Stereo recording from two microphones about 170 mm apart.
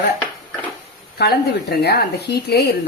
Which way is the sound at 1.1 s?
70° left (ahead or behind).